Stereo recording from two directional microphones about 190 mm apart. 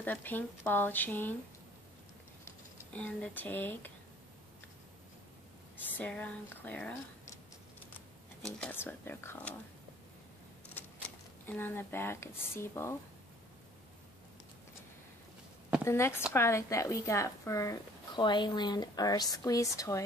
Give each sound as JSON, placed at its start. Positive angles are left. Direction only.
{"t": 0.0, "sound": "a woman's voice", "side_deg": 10}
{"t": 2.4, "sound": "speech", "side_deg": 5}
{"t": 5.8, "sound": "speech", "side_deg": 10}
{"t": 8.5, "sound": "a woman's voice", "side_deg": 10}
{"t": 10.7, "sound": "speech", "side_deg": 10}
{"t": 15.8, "sound": "a woman's voice", "side_deg": 15}